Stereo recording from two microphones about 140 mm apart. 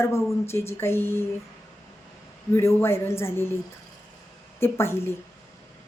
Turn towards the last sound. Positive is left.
turn(degrees=15)  # may be behind; listen again after turning